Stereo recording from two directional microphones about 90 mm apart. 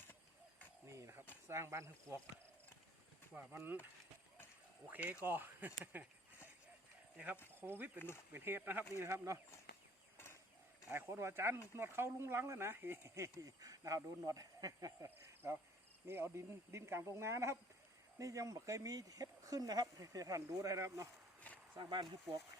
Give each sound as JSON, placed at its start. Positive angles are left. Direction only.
{"t": 0.9, "sound": "a sound", "side_deg": -35}
{"t": 1.5, "sound": "speech", "side_deg": -30}
{"t": 3.3, "sound": "speech", "side_deg": -20}
{"t": 4.9, "sound": "speech", "side_deg": -20}
{"t": 7.2, "sound": "speech", "side_deg": -15}
{"t": 7.9, "sound": "speech", "side_deg": 25}
{"t": 8.3, "sound": "speech", "side_deg": -25}
{"t": 9.0, "sound": "speech", "side_deg": -35}
{"t": 10.9, "sound": "speech", "side_deg": -25}
{"t": 15.4, "sound": "speech", "side_deg": -20}
{"t": 21.5, "sound": "a sound", "side_deg": 15}
{"t": 21.8, "sound": "speech", "side_deg": -55}